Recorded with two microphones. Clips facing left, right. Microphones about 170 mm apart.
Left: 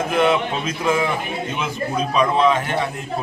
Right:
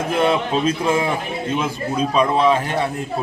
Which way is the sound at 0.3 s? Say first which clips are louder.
Right 2 dB; 30° right (ahead or behind).